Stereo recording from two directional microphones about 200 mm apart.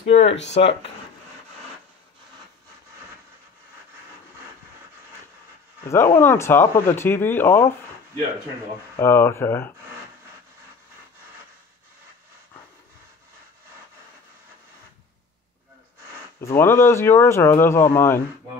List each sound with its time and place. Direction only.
0.1 s speech: 35° left (ahead or behind)
5.9 s speech: 15° left (ahead or behind)
8.9 s speech: 10° left (ahead or behind)
16.3 s speech: 10° left (ahead or behind)